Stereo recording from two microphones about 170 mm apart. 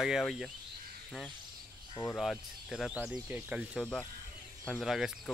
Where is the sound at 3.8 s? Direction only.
5° left (ahead or behind).